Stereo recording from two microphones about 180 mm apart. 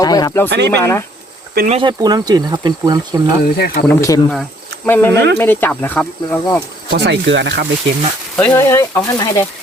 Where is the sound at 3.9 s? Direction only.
15° left (ahead or behind).